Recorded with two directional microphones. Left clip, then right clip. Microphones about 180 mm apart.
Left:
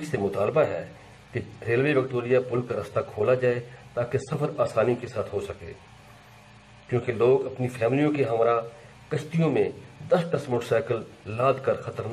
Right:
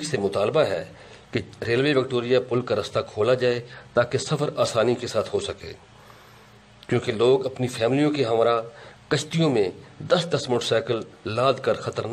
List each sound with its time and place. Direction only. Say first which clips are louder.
0.1 s speech: right 2 dB; 45° right (ahead or behind)
6.9 s speech: right 2 dB; 45° right (ahead or behind)